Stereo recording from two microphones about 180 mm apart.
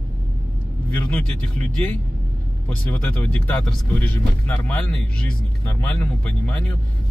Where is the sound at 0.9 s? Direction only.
10° left (ahead or behind).